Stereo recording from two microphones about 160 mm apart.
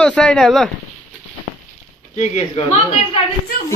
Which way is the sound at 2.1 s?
40° left (ahead or behind).